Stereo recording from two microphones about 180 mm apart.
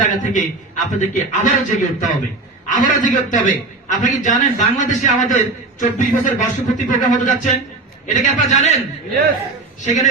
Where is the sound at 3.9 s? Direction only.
45° left (ahead or behind).